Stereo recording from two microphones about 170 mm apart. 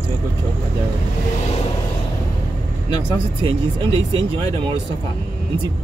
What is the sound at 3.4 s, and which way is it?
Speech, 30° right (ahead or behind).